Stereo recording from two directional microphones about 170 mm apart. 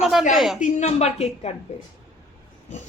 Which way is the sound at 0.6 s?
40° left (ahead or behind).